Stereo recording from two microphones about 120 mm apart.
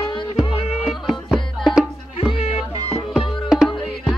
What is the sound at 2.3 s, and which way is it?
Music, 55° left (ahead or behind).